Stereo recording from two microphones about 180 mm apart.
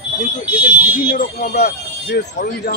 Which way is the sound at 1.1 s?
55° left (ahead or behind).